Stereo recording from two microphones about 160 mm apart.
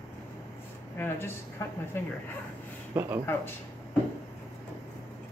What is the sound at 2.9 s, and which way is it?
Speech, 15° right (ahead or behind).